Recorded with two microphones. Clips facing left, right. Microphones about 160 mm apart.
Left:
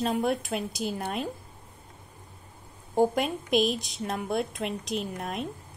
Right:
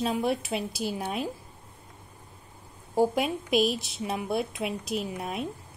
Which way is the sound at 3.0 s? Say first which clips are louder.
Even; 5° right (ahead or behind).